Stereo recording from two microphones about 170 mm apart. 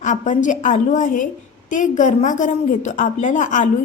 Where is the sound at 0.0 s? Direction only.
45° left (ahead or behind).